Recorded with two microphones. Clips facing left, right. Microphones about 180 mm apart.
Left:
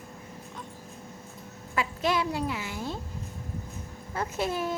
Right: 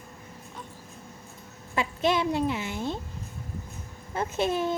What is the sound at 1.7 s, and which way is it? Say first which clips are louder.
A woman's voice: right 2 dB; 25° right (ahead or behind).